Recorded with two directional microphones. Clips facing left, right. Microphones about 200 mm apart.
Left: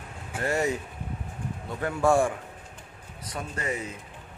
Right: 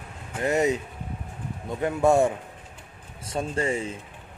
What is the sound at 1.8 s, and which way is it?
A man's voice, 20° right (ahead or behind).